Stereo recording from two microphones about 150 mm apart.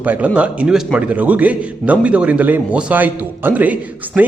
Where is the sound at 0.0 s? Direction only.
10° right (ahead or behind).